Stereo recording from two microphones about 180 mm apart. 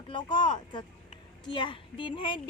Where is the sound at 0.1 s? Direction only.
25° left (ahead or behind).